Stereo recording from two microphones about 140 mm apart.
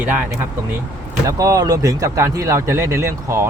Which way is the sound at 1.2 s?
25° right (ahead or behind).